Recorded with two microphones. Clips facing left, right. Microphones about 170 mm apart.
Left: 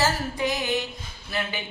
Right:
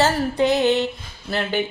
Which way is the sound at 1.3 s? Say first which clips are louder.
Right 8 dB; 70° right (ahead or behind).